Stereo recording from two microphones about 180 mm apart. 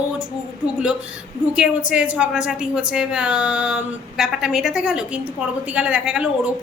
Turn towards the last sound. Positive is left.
turn(degrees=-5)  # may be behind; listen again after turning